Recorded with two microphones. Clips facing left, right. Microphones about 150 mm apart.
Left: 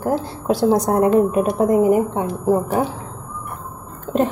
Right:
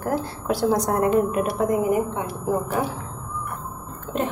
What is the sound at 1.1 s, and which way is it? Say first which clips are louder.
A woman's voice: left 5 dB; 35° left (ahead or behind).